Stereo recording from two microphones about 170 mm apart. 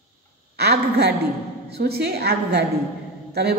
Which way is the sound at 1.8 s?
65° right (ahead or behind).